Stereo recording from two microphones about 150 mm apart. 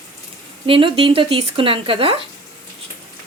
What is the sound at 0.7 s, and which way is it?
Speech, 35° right (ahead or behind).